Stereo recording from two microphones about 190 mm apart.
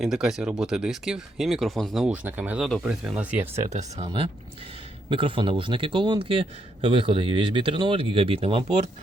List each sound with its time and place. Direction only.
0.0 s speech: centre (ahead or behind)
3.5 s a man's voice: 35° right (ahead or behind)